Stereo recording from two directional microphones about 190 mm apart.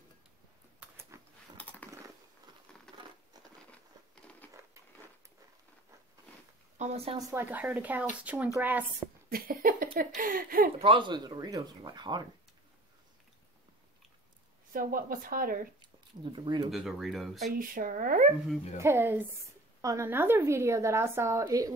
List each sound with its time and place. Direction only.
0.7 s a sound: 10° right (ahead or behind)
1.6 s a sound: 10° left (ahead or behind)
6.8 s speech: 35° right (ahead or behind)
7.2 s a woman's voice: 15° right (ahead or behind)
9.3 s speech: 50° right (ahead or behind)
10.8 s speech: 25° right (ahead or behind)
14.7 s speech: 50° right (ahead or behind)
15.8 s speech: 25° right (ahead or behind)
16.7 s speech: centre (ahead or behind)
17.5 s speech: 45° right (ahead or behind)
18.8 s a woman's voice: 15° right (ahead or behind)